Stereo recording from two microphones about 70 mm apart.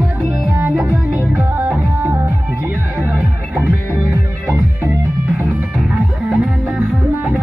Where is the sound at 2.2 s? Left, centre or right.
Right.